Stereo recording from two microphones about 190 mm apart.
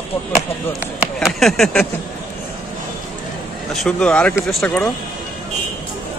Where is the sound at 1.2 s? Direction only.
Centre (ahead or behind).